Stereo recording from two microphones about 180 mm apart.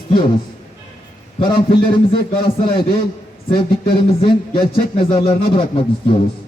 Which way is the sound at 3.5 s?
25° left (ahead or behind).